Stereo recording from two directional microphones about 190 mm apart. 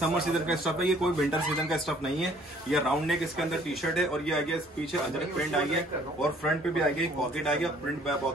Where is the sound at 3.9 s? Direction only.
Centre (ahead or behind).